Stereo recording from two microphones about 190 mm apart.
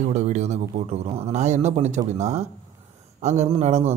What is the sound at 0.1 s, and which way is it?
A man's voice, 35° right (ahead or behind).